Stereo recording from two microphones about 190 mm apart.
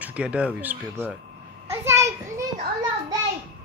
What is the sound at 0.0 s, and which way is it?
A man's voice, 5° right (ahead or behind).